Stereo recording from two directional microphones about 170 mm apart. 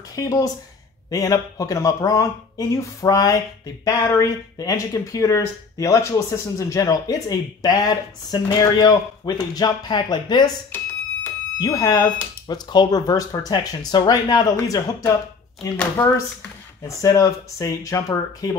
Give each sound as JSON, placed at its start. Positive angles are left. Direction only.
{"t": 0.1, "sound": "speech", "side_deg": 20}
{"t": 16.8, "sound": "speech", "side_deg": 20}